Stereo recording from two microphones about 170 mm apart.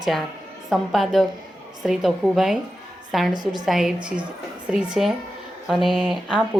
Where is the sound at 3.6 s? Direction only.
Centre (ahead or behind).